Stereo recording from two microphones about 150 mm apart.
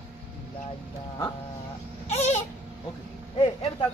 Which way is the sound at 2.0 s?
45° left (ahead or behind).